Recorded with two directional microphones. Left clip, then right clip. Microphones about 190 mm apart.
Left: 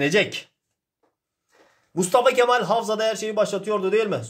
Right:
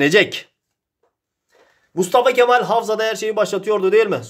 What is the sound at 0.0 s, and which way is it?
Speech, 40° right (ahead or behind).